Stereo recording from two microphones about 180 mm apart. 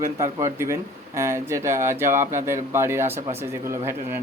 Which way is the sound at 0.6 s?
15° right (ahead or behind).